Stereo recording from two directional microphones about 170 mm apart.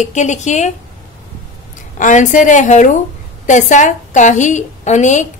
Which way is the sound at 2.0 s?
50° left (ahead or behind).